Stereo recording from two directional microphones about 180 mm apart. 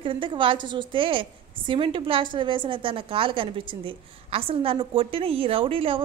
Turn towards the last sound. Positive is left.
turn(degrees=-30)  # may be behind; listen again after turning